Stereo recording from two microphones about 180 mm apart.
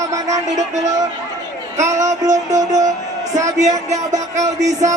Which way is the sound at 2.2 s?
20° right (ahead or behind).